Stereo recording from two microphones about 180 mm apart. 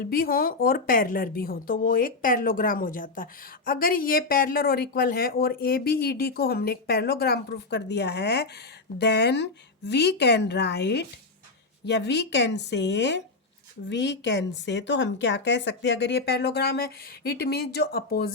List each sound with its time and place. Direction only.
0.0 s a woman's voice: 55° left (ahead or behind)